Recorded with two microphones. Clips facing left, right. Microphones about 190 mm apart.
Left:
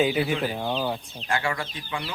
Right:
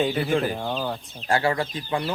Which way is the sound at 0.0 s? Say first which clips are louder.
Right 1 dB; 5° left (ahead or behind).